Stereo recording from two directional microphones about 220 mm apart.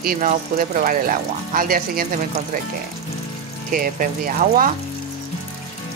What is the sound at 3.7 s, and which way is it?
Speech, 40° right (ahead or behind).